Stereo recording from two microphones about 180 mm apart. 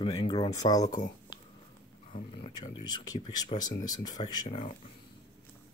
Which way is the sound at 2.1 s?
30° left (ahead or behind).